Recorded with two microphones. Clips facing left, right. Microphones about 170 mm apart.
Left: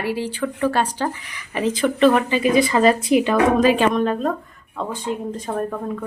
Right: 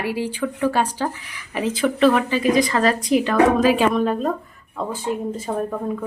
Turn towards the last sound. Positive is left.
turn(degrees=-5)  # may be behind; listen again after turning